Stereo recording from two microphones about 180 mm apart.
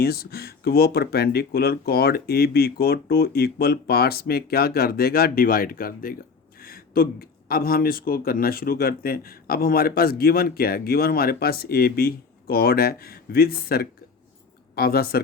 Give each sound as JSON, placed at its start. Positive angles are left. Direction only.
{"t": 0.0, "sound": "speech", "side_deg": 60}